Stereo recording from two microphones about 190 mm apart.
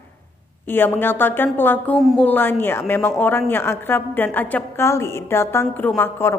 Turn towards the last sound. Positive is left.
turn(degrees=10)  # may be behind; listen again after turning